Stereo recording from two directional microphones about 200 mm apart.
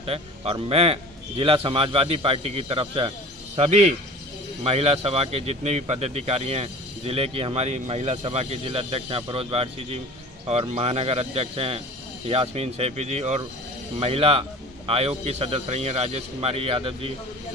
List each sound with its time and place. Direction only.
0.0 s a man's voice: 30° right (ahead or behind)